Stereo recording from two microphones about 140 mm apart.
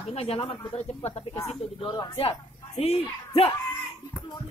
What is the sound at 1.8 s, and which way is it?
Speech, 30° left (ahead or behind).